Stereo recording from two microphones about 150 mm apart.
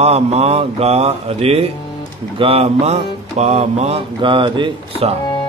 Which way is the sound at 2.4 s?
40° right (ahead or behind).